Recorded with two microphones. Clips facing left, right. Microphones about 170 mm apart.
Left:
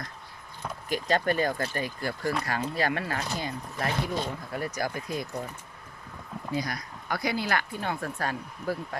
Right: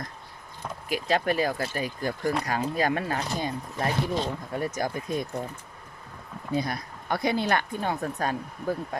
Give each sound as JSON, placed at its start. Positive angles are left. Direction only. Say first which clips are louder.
{"t": 0.9, "sound": "speech", "louder": "right 1 dB", "side_deg": -5}
{"t": 6.5, "sound": "speech", "louder": "right 4 dB", "side_deg": -25}